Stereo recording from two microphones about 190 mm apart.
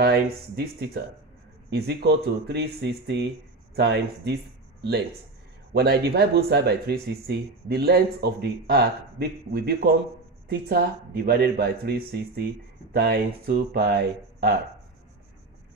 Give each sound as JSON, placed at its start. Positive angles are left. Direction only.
{"t": 0.0, "sound": "speech", "side_deg": -60}
{"t": 5.7, "sound": "speech", "side_deg": -60}